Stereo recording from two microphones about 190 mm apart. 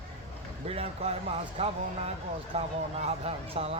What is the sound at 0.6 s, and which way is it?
Speech, 30° right (ahead or behind).